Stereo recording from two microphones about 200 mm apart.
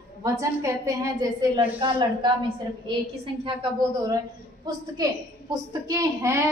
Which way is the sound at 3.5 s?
20° right (ahead or behind).